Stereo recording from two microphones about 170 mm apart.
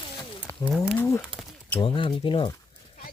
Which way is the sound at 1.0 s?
15° left (ahead or behind).